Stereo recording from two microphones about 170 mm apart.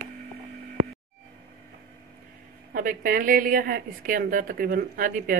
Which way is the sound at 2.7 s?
55° right (ahead or behind).